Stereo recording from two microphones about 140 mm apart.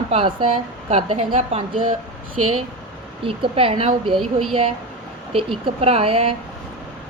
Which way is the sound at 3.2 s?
40° right (ahead or behind).